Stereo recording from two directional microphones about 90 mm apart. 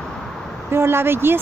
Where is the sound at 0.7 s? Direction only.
25° right (ahead or behind).